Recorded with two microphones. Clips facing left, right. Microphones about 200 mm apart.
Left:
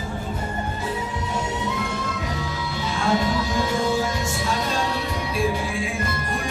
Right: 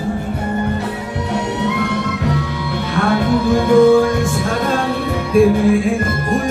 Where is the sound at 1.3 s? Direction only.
65° right (ahead or behind).